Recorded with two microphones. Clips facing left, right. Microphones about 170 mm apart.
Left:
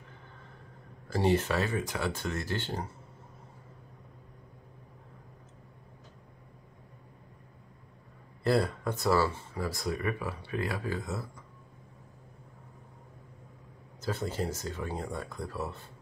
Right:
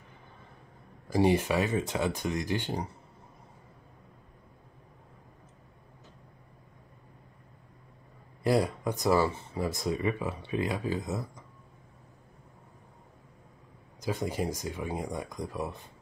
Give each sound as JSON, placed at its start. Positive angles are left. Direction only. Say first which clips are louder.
{"t": 1.0, "sound": "speech", "louder": "right 2 dB", "side_deg": -15}
{"t": 8.5, "sound": "speech", "louder": "right 1 dB", "side_deg": -15}
{"t": 14.0, "sound": "speech", "louder": "right 2 dB", "side_deg": -15}